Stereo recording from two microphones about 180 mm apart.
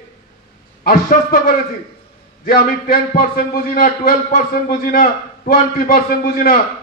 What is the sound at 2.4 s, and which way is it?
A man's voice, 55° left (ahead or behind).